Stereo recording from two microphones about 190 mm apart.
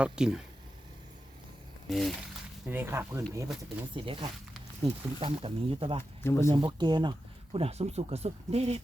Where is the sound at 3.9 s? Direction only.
25° right (ahead or behind).